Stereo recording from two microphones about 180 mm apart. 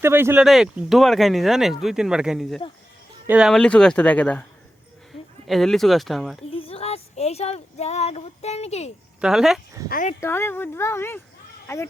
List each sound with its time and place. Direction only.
0.0 s speech: 15° right (ahead or behind)
0.4 s speech: centre (ahead or behind)
5.5 s speech: centre (ahead or behind)
6.5 s speech: 30° left (ahead or behind)
9.2 s speech: centre (ahead or behind)
9.9 s speech: 45° left (ahead or behind)
10.2 s speech: 15° left (ahead or behind)